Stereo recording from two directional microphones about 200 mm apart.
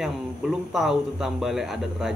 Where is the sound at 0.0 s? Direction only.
Centre (ahead or behind).